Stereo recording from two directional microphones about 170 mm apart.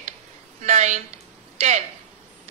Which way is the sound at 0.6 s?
40° right (ahead or behind).